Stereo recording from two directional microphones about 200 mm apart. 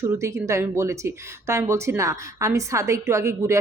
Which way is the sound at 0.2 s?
15° right (ahead or behind).